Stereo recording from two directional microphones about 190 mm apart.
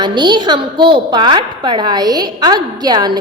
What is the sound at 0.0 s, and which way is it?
A woman's voice, 25° right (ahead or behind).